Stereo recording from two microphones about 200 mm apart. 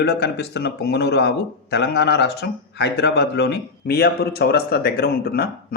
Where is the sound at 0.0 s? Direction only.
55° left (ahead or behind).